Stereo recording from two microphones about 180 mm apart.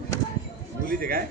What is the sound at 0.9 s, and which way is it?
Speech, 55° right (ahead or behind).